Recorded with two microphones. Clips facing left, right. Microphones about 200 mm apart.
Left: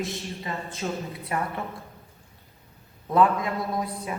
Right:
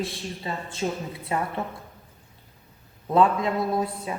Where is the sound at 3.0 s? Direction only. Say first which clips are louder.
Right 1 dB; 25° right (ahead or behind).